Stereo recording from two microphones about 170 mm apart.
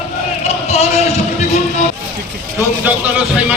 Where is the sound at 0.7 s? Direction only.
40° left (ahead or behind).